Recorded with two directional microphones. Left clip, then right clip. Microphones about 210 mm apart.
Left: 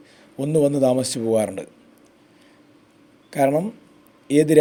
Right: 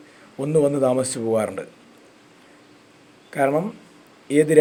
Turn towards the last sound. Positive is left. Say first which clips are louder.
# left 1 dB
turn(degrees=30)  # may be behind; listen again after turning